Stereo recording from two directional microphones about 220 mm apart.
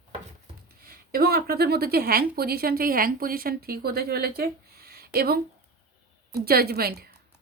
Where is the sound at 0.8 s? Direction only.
45° right (ahead or behind).